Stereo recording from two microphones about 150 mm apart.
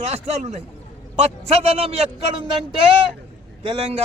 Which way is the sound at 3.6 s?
40° right (ahead or behind).